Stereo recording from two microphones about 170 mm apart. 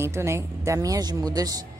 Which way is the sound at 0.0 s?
15° right (ahead or behind).